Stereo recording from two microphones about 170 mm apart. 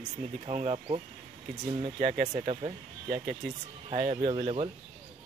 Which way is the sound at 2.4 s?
35° right (ahead or behind).